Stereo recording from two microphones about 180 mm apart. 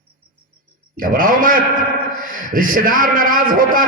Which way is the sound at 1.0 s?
50° right (ahead or behind).